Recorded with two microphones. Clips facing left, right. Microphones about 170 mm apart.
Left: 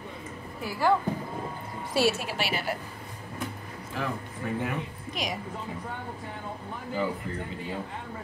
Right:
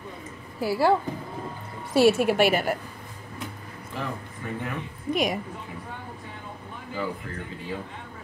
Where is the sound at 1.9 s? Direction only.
55° right (ahead or behind).